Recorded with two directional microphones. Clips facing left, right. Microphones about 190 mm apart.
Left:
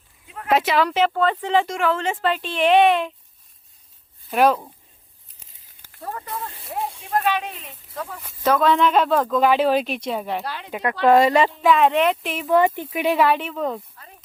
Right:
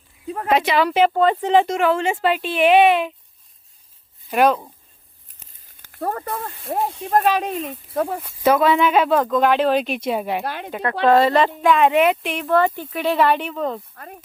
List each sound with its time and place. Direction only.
0.3 s a sound: 40° right (ahead or behind)
0.5 s speech: centre (ahead or behind)
0.9 s speech: 10° right (ahead or behind)
4.3 s speech: centre (ahead or behind)
5.9 s speech: 55° right (ahead or behind)
8.2 s speech: 5° right (ahead or behind)
10.4 s speech: 55° right (ahead or behind)
10.7 s speech: 10° left (ahead or behind)
12.5 s speech: 15° left (ahead or behind)
13.2 s speech: centre (ahead or behind)
13.9 s speech: 55° right (ahead or behind)